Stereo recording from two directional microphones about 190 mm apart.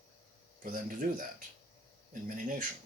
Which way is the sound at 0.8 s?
45° right (ahead or behind).